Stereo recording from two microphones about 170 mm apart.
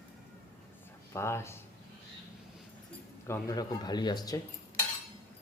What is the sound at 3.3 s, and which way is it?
Speech, 20° left (ahead or behind).